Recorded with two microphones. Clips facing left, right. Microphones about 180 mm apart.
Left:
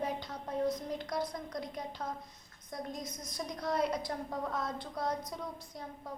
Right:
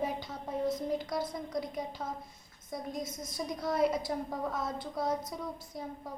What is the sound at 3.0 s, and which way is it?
Speech, 25° right (ahead or behind).